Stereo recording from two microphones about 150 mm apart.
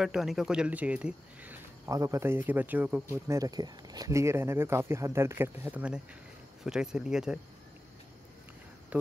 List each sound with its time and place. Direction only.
0.0 s speech: 5° right (ahead or behind)
1.9 s speech: 20° right (ahead or behind); by 7.3 s 5° right (ahead or behind)